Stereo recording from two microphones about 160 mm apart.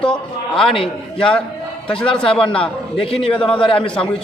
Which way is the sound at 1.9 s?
5° left (ahead or behind).